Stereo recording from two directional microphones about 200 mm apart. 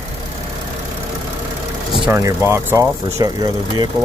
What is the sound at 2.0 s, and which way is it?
Speech, 15° right (ahead or behind).